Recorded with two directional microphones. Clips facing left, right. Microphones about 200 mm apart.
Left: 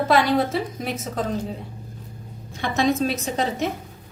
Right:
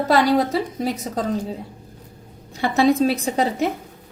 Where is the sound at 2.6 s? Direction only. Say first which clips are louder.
Right 4 dB; 35° right (ahead or behind).